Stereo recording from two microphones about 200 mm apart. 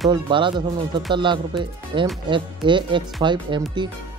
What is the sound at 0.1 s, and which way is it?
Speech, 25° right (ahead or behind).